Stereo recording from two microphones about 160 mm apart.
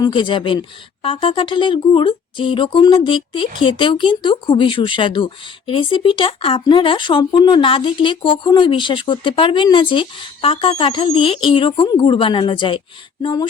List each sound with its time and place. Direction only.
0.0 s speech: 30° left (ahead or behind)